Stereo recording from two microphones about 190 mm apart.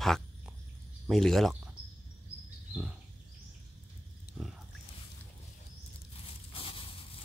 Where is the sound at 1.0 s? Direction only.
Centre (ahead or behind).